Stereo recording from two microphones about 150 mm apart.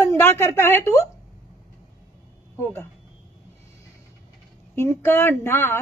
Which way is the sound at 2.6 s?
15° left (ahead or behind).